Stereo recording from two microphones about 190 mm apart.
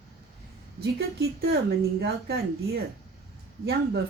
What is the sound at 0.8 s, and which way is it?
Speech, 55° right (ahead or behind).